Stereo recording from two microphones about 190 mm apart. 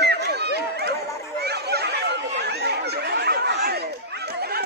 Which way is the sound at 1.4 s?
60° right (ahead or behind).